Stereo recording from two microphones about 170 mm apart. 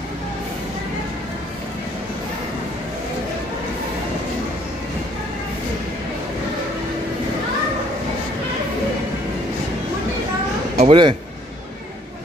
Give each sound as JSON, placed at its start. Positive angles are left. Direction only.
{"t": 10.8, "sound": "speech", "side_deg": -30}